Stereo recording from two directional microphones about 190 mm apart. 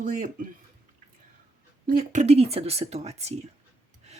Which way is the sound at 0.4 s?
45° right (ahead or behind).